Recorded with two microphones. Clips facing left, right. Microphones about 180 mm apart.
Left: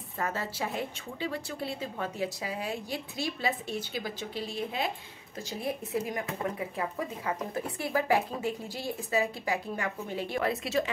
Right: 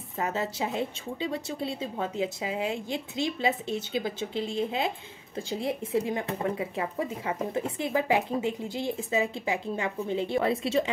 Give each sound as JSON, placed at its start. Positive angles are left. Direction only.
{"t": 0.2, "sound": "a woman's voice", "side_deg": -20}